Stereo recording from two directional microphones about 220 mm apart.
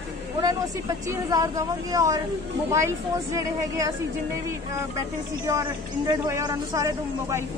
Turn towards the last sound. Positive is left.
turn(degrees=-15)  # may be behind; listen again after turning